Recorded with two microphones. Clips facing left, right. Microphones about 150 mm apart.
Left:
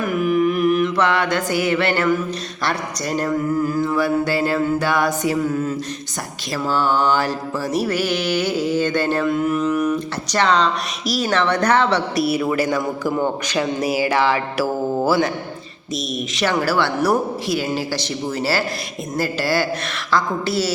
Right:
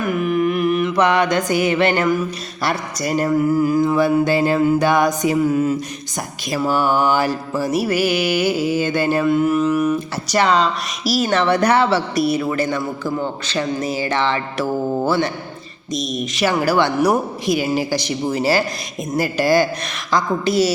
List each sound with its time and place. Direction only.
0.1 s carnatic music: centre (ahead or behind)
0.9 s mantra: 15° right (ahead or behind); by 15.3 s 5° left (ahead or behind)
16.1 s speech: centre (ahead or behind)
16.6 s mantra: 15° right (ahead or behind)